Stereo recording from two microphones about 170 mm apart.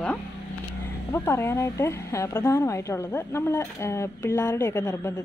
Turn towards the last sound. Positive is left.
turn(degrees=20)  # may be behind; listen again after turning